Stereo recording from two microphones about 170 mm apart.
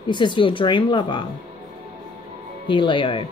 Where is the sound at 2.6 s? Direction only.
30° left (ahead or behind).